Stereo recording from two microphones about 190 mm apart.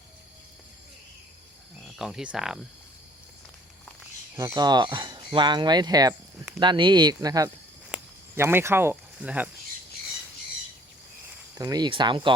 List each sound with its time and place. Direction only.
1.8 s speech: centre (ahead or behind)
4.4 s speech: 20° right (ahead or behind)
7.9 s a sound: 10° right (ahead or behind)
11.5 s speech: 20° right (ahead or behind)